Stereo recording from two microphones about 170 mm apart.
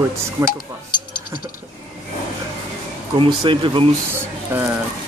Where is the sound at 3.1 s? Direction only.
30° right (ahead or behind).